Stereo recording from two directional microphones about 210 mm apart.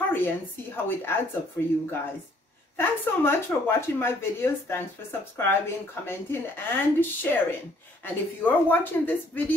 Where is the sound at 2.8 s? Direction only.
10° left (ahead or behind).